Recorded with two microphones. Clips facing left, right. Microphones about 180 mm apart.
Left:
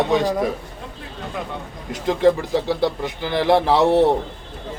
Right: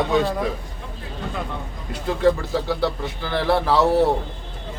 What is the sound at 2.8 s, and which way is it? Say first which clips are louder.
Speech: left 2 dB; 15° left (ahead or behind).